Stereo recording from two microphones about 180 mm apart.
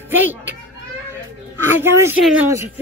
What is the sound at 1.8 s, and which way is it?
Speech, 15° right (ahead or behind).